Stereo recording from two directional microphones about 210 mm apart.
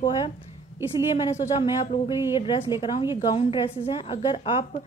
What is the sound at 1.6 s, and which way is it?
A woman's voice, 20° left (ahead or behind).